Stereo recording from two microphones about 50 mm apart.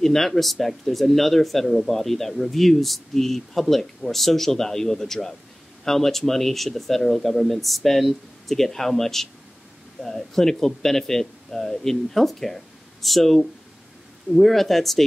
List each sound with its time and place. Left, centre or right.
0.0 s speech: centre